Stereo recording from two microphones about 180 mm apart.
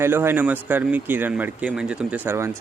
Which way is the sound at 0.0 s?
10° right (ahead or behind).